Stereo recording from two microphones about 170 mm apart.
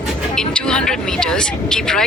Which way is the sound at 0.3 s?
5° left (ahead or behind).